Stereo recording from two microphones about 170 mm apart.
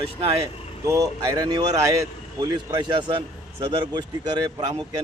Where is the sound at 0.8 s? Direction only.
20° right (ahead or behind).